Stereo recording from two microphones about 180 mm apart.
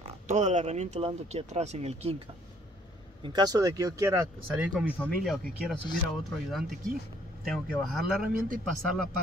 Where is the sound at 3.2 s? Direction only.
25° right (ahead or behind).